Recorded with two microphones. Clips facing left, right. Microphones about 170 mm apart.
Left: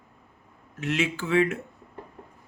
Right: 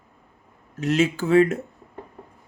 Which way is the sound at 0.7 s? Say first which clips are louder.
Right 6 dB; 40° right (ahead or behind).